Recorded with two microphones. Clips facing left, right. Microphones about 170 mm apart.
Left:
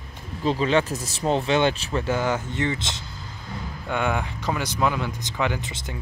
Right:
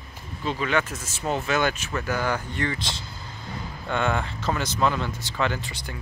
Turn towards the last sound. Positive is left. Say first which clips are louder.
# left 1 dB
turn(degrees=20)  # may be behind; listen again after turning